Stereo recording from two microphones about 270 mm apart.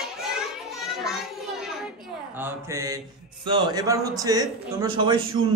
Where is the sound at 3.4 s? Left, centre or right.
Centre.